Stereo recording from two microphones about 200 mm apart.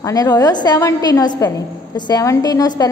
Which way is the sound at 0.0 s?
20° left (ahead or behind).